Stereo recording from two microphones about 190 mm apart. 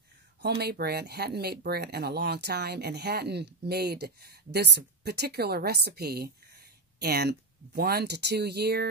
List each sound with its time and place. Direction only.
0.4 s a woman's voice: 60° right (ahead or behind)